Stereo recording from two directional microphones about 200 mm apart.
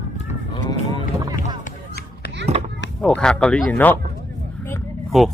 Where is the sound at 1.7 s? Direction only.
50° left (ahead or behind).